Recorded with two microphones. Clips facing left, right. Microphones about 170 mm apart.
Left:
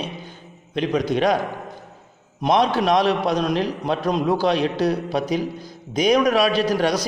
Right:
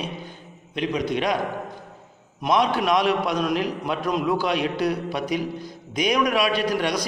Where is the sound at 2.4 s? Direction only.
35° left (ahead or behind).